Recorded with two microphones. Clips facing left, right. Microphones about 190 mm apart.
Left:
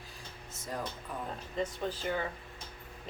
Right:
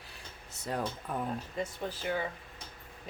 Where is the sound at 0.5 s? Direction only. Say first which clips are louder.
Right 4 dB; 65° right (ahead or behind).